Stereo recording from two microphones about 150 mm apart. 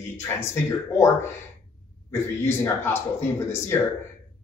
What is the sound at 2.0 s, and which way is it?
Speech, 20° left (ahead or behind).